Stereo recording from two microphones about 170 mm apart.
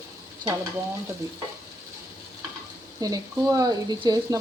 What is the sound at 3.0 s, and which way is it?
Speech, 20° right (ahead or behind).